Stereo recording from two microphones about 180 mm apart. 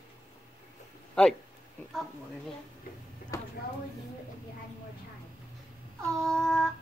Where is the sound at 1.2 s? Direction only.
5° left (ahead or behind).